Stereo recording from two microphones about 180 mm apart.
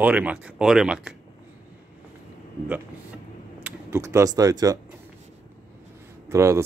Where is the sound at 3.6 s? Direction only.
15° right (ahead or behind).